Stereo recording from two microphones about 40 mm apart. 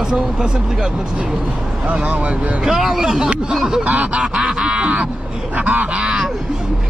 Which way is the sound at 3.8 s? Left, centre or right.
Right.